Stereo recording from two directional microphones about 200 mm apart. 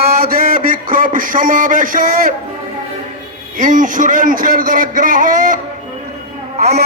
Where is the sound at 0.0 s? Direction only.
50° right (ahead or behind).